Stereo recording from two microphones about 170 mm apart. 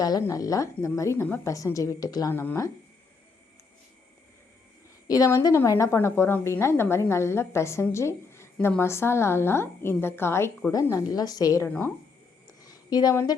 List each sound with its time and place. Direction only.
0.0 s a woman's voice: 20° left (ahead or behind)
5.0 s a woman's voice: 20° left (ahead or behind)
12.6 s a sound: 20° left (ahead or behind)